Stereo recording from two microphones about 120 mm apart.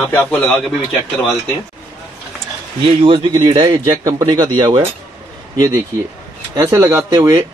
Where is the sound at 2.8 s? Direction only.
50° right (ahead or behind).